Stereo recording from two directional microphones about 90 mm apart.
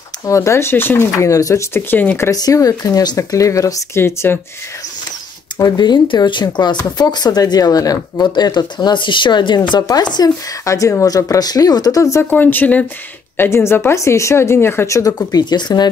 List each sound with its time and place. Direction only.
0.3 s speech: 35° left (ahead or behind)
1.3 s speech: 35° left (ahead or behind)
2.3 s speech: 45° left (ahead or behind)
4.0 s speech: 25° left (ahead or behind)
5.6 s speech: 55° left (ahead or behind)
9.7 s speech: 50° left (ahead or behind)
10.6 s speech: 35° left (ahead or behind)
12.3 s speech: 20° left (ahead or behind)
15.3 s speech: 50° left (ahead or behind)